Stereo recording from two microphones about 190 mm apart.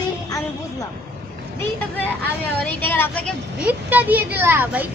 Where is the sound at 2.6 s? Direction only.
10° left (ahead or behind).